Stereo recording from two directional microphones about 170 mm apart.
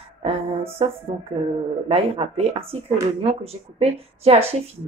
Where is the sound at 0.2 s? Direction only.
35° right (ahead or behind).